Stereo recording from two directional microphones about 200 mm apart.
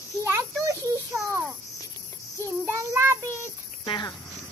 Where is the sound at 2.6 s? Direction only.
10° right (ahead or behind).